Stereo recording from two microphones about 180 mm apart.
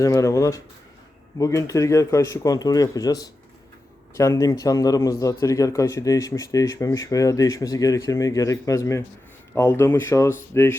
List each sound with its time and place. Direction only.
0.0 s speech: 15° left (ahead or behind)